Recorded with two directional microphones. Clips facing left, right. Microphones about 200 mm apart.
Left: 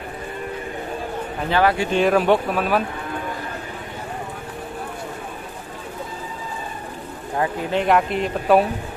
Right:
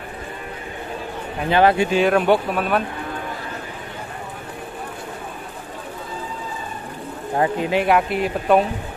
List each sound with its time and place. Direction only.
1.5 s speech: 20° right (ahead or behind)
1.9 s speech: centre (ahead or behind)
7.7 s speech: 5° right (ahead or behind)